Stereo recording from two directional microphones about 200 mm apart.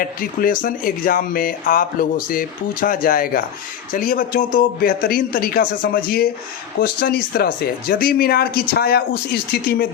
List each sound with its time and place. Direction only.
0.0 s speech: 45° left (ahead or behind)